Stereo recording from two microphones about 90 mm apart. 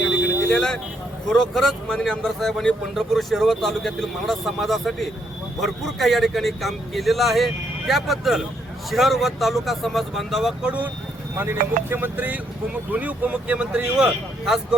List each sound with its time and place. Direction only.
0.5 s speech: 5° left (ahead or behind)
10.6 s speech: 15° right (ahead or behind)